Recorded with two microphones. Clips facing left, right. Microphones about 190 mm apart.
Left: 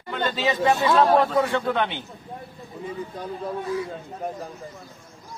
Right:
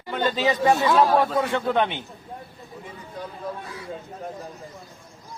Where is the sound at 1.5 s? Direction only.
20° right (ahead or behind).